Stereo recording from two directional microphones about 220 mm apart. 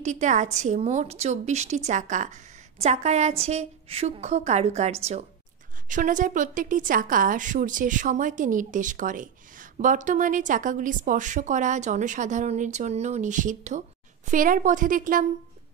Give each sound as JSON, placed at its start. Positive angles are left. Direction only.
{"t": 0.0, "sound": "a woman's voice", "side_deg": -35}